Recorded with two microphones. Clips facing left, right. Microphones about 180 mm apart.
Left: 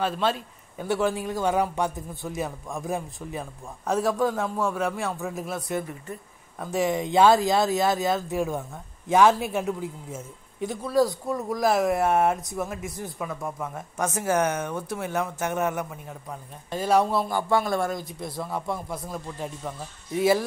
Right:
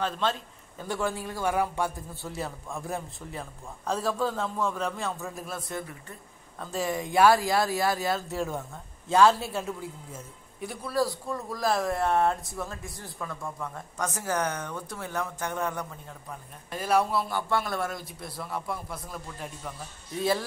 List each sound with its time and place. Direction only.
0.0 s a man's voice: 10° left (ahead or behind)
17.2 s speech: 45° left (ahead or behind)
17.9 s a man's voice: 20° left (ahead or behind)
20.2 s a man's voice: 20° left (ahead or behind)